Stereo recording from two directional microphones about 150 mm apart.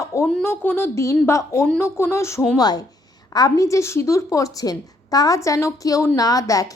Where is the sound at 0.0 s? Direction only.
20° left (ahead or behind).